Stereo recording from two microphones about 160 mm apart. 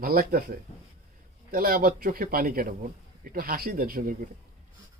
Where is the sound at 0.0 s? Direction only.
65° right (ahead or behind).